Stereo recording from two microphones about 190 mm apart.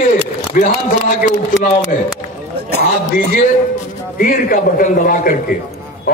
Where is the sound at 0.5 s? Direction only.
45° left (ahead or behind).